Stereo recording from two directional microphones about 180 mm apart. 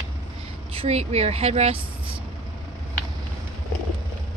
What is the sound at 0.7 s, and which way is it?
A woman's voice, 35° right (ahead or behind).